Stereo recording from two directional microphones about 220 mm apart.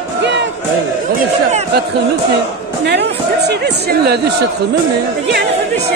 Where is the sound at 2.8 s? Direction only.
50° right (ahead or behind).